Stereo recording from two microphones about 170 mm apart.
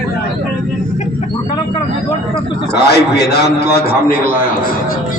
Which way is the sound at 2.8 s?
75° left (ahead or behind).